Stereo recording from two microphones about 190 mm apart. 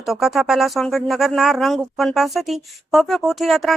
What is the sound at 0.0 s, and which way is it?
Speech, centre (ahead or behind).